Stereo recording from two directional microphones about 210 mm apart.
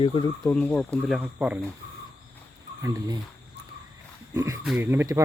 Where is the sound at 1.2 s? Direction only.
5° right (ahead or behind).